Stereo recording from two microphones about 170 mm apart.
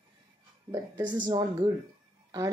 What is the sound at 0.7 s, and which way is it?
Speech, 25° right (ahead or behind).